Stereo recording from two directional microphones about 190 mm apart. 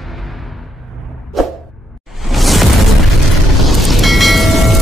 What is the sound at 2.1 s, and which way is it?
Whoosh, centre (ahead or behind).